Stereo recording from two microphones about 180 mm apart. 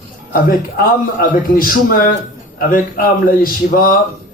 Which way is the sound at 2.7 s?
50° left (ahead or behind).